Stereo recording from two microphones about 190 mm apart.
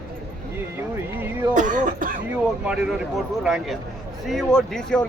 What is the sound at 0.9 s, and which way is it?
Music, 15° right (ahead or behind).